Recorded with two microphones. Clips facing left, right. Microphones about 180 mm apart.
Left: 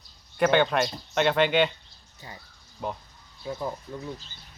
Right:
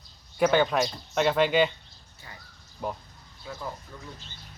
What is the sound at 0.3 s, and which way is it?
Speech, centre (ahead or behind).